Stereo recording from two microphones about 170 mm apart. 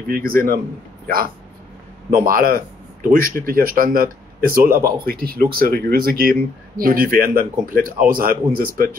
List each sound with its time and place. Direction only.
0.1 s speech: 60° right (ahead or behind)